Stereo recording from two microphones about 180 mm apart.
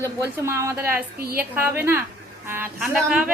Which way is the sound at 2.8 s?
Centre (ahead or behind).